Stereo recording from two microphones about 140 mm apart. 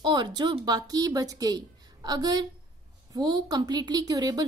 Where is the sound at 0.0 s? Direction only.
30° right (ahead or behind).